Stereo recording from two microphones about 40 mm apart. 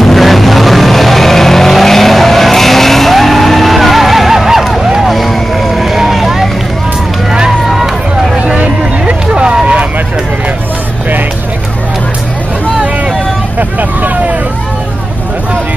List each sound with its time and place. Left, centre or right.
0.0 s vehicle: centre
7.6 s vehicle: centre
8.5 s vehicle: right
13.6 s vehicle: right